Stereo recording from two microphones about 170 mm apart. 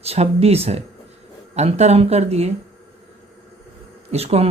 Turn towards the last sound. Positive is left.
turn(degrees=-35)  # may be behind; listen again after turning